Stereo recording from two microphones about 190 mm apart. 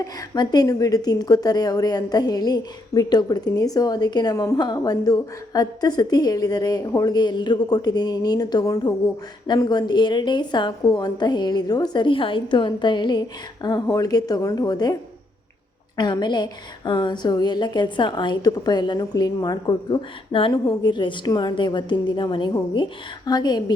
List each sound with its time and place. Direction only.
0.0 s a woman's voice: 20° left (ahead or behind)
16.0 s a woman's voice: 20° left (ahead or behind)